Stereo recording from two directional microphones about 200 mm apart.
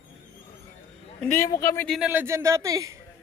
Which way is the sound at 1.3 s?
10° left (ahead or behind).